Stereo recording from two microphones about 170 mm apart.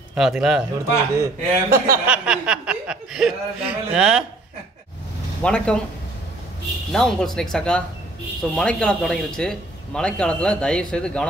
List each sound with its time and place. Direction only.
0.1 s a man's voice: 5° right (ahead or behind)
1.1 s a man's voice: 15° right (ahead or behind)
2.2 s a man's voice: 5° right (ahead or behind)
5.4 s a man's voice: 5° left (ahead or behind)
6.9 s a man's voice: centre (ahead or behind)